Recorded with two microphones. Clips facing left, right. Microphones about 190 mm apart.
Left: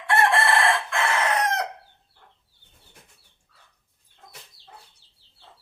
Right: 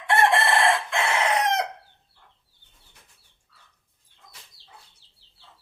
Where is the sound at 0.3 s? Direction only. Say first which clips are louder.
Even; 20° right (ahead or behind).